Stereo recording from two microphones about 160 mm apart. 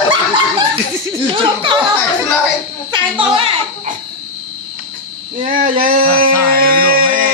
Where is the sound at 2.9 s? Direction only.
35° right (ahead or behind).